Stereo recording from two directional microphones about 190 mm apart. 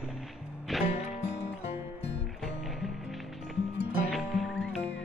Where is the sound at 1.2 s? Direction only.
35° left (ahead or behind).